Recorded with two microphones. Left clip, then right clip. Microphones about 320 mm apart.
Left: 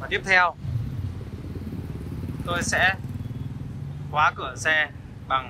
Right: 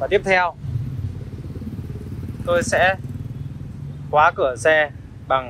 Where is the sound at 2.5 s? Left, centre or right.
Centre.